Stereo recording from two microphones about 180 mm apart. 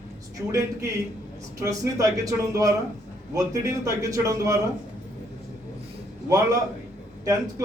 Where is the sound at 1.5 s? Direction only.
15° right (ahead or behind).